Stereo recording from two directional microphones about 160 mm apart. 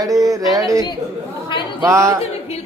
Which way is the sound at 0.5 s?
20° right (ahead or behind).